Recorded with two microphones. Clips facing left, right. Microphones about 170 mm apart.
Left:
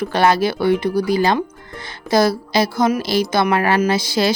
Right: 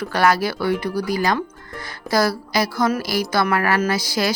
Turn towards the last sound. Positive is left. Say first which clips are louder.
# left 4 dB
turn(degrees=25)  # may be behind; listen again after turning